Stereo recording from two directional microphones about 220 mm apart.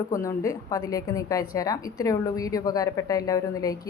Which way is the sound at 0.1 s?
15° left (ahead or behind).